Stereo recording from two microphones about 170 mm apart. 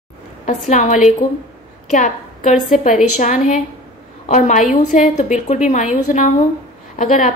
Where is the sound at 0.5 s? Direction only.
45° left (ahead or behind).